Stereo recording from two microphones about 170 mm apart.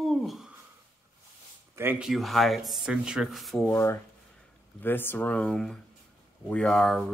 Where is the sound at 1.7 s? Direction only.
10° right (ahead or behind).